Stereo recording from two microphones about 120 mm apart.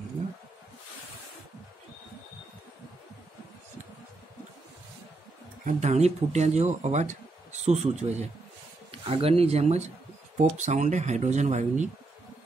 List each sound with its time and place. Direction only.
5.8 s speech: 70° right (ahead or behind)
8.9 s speech: 50° right (ahead or behind); by 11.9 s 80° right